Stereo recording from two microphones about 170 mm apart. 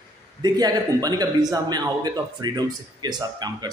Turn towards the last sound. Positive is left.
turn(degrees=-25)  # may be behind; listen again after turning